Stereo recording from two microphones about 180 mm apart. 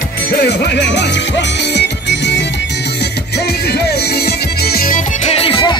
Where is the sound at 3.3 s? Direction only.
60° left (ahead or behind).